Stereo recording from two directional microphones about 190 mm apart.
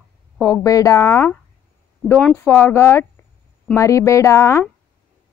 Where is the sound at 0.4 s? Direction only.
15° left (ahead or behind).